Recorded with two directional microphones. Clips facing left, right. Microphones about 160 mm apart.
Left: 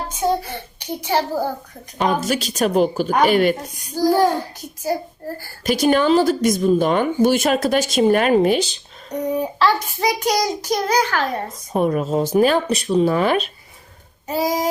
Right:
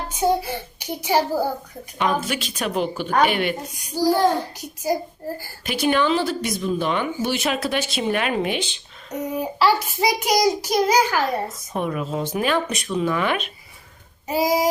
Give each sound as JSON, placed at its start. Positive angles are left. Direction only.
{"t": 0.1, "sound": "a child's voice", "side_deg": -10}
{"t": 2.0, "sound": "speech", "side_deg": 40}
{"t": 3.8, "sound": "a child's voice", "side_deg": -10}
{"t": 5.6, "sound": "speech", "side_deg": 40}
{"t": 9.6, "sound": "a child's voice", "side_deg": -10}
{"t": 11.7, "sound": "speech", "side_deg": 40}
{"t": 14.3, "sound": "a child's voice", "side_deg": -10}